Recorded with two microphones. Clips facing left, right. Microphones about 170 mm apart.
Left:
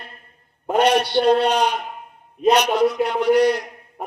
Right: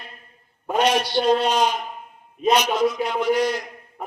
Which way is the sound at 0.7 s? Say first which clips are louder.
Left 3 dB; 60° left (ahead or behind).